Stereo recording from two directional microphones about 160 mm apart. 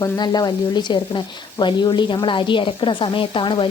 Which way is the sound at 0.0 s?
25° left (ahead or behind).